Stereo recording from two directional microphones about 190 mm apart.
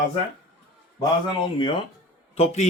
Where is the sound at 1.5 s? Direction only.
25° left (ahead or behind).